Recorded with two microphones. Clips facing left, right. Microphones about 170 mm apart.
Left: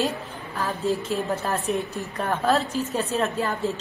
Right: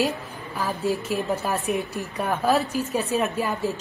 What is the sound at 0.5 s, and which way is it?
A woman's voice, 15° right (ahead or behind).